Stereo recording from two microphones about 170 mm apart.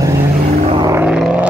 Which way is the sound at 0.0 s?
20° right (ahead or behind).